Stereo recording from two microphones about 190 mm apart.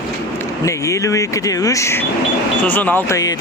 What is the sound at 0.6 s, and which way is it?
Speech, 15° left (ahead or behind).